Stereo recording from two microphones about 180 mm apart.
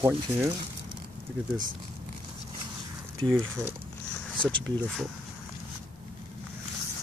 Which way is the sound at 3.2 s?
20° right (ahead or behind).